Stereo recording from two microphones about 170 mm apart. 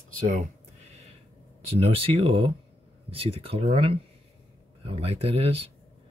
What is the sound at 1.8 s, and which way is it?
Speech, 35° right (ahead or behind).